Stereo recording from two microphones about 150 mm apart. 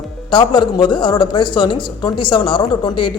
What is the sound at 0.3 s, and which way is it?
A man's voice, 30° left (ahead or behind).